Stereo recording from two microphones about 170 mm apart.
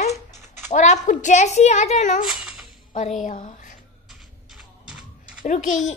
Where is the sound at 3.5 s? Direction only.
50° left (ahead or behind).